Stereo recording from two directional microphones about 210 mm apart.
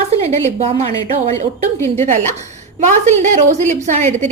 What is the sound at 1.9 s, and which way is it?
A woman's voice, 30° right (ahead or behind).